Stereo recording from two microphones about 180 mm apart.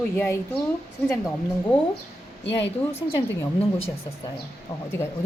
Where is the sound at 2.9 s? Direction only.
15° left (ahead or behind).